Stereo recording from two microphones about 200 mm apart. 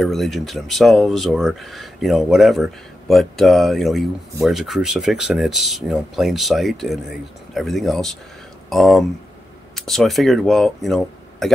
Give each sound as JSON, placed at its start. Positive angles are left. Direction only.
{"t": 0.0, "sound": "speech", "side_deg": 0}